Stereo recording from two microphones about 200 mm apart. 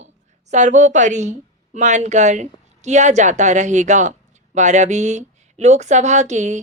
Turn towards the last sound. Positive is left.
turn(degrees=-35)  # may be behind; listen again after turning